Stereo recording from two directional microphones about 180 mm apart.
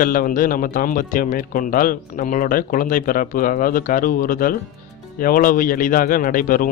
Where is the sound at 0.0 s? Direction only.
50° left (ahead or behind).